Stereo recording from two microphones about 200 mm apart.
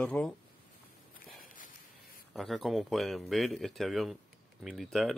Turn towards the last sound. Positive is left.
turn(degrees=0)  # may be behind; listen again after turning